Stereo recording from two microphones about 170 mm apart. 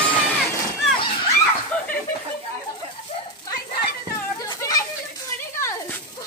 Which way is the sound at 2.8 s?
35° right (ahead or behind).